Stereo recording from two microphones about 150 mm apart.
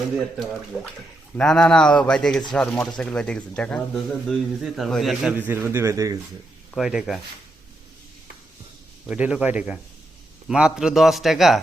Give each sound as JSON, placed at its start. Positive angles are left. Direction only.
{"t": 0.2, "sound": "speech", "side_deg": 0}
{"t": 5.4, "sound": "speech", "side_deg": -15}
{"t": 6.7, "sound": "speech", "side_deg": 0}
{"t": 9.0, "sound": "speech", "side_deg": -10}